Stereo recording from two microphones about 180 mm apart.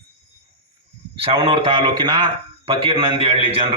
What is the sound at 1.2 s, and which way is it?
A man's voice, 30° right (ahead or behind).